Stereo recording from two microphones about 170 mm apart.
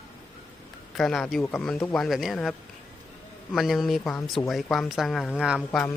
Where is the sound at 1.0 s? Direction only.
5° left (ahead or behind).